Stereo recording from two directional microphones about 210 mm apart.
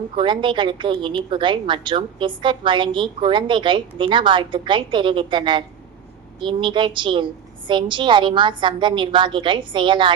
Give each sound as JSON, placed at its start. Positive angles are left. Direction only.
{"t": 0.2, "sound": "a woman's voice", "side_deg": -25}